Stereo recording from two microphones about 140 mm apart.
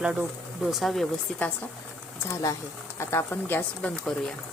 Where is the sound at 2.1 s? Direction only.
20° left (ahead or behind); by 4.4 s 5° left (ahead or behind).